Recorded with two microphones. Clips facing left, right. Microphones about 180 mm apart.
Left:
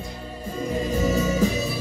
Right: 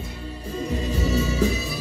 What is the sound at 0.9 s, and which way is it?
Music, 50° left (ahead or behind).